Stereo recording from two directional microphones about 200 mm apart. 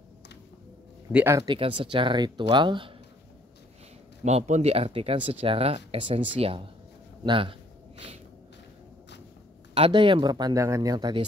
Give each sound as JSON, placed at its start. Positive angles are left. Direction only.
{"t": 1.1, "sound": "speech", "side_deg": -15}
{"t": 1.6, "sound": "speech", "side_deg": -25}
{"t": 4.2, "sound": "speech", "side_deg": -35}
{"t": 9.8, "sound": "speech", "side_deg": -30}